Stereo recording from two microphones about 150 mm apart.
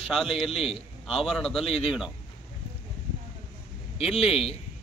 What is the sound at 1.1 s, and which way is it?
Speech, centre (ahead or behind).